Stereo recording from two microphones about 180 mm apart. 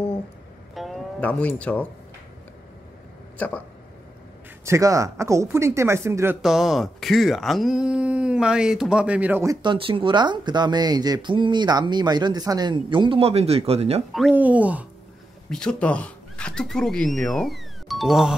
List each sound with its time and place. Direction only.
0.7 s music: centre (ahead or behind)
1.6 s speech: 10° left (ahead or behind)
3.3 s speech: 10° left (ahead or behind)
4.6 s speech: 15° right (ahead or behind)
6.4 s speech: centre (ahead or behind); by 14.0 s 35° right (ahead or behind)
14.3 s speech: 10° right (ahead or behind)
15.5 s speech: 5° left (ahead or behind)